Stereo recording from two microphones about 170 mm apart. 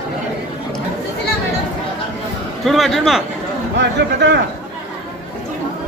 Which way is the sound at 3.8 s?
90° right.